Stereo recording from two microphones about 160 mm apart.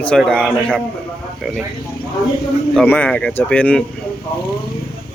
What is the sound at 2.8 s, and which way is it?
A man's voice, 10° left (ahead or behind).